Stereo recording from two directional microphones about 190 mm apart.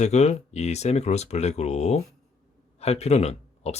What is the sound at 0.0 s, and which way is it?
Speech, 35° left (ahead or behind).